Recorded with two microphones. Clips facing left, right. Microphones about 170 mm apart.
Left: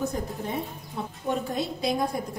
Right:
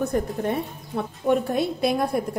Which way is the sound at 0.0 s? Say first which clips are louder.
Right 6 dB; 60° right (ahead or behind).